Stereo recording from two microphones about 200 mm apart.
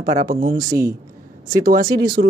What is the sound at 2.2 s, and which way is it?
Speech, 60° right (ahead or behind).